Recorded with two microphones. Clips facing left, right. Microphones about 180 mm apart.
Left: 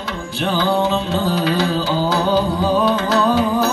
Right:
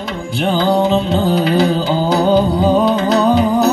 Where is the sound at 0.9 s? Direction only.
25° right (ahead or behind).